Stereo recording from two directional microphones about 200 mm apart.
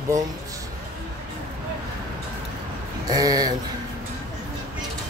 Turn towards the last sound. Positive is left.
turn(degrees=-20)  # may be behind; listen again after turning